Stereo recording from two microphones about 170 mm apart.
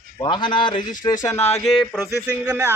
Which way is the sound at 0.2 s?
25° left (ahead or behind).